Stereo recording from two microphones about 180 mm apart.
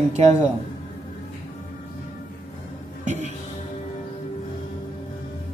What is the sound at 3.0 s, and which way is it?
Music, 40° right (ahead or behind).